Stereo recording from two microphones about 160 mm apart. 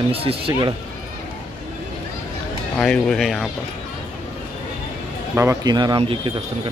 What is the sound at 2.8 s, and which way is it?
Speech, 5° left (ahead or behind).